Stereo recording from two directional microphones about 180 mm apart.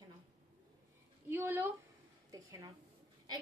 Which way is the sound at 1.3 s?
10° right (ahead or behind).